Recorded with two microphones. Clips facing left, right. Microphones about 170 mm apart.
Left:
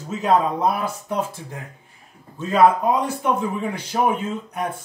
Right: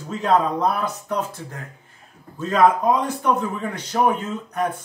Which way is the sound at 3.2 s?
10° left (ahead or behind).